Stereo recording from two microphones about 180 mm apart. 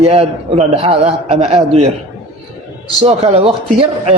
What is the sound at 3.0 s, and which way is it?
A man's voice, 35° right (ahead or behind).